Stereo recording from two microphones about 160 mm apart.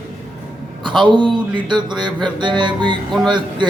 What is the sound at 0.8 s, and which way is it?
A man's voice, 30° right (ahead or behind).